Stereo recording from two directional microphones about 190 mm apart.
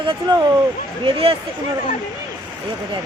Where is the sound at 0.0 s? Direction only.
25° right (ahead or behind).